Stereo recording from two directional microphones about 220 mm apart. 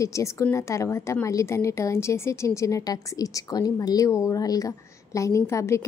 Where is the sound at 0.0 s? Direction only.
15° left (ahead or behind).